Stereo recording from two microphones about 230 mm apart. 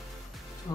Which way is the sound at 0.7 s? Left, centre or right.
Centre.